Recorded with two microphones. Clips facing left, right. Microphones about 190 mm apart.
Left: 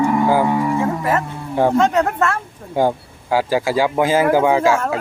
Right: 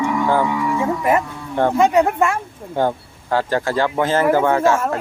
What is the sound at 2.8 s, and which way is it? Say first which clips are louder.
Speech: left 2 dB; 10° left (ahead or behind).